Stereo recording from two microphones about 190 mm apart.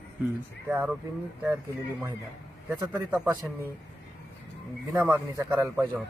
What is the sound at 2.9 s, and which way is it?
Speech, 10° right (ahead or behind).